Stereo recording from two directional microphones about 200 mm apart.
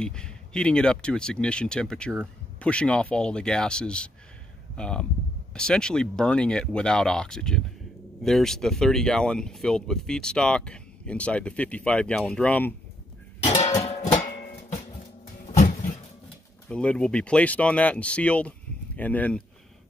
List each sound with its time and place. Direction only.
0.0 s speech: 5° left (ahead or behind)
13.5 s music: 35° left (ahead or behind)
15.4 s a sound: 35° left (ahead or behind)
16.6 s speech: 5° left (ahead or behind)